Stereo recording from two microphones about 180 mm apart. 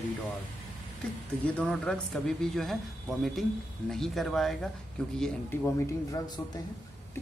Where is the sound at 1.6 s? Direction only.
5° left (ahead or behind).